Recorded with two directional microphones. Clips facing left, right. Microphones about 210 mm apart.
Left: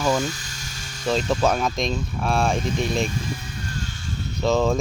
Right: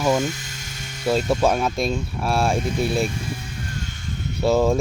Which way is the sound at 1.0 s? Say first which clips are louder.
Right 2 dB; 10° right (ahead or behind).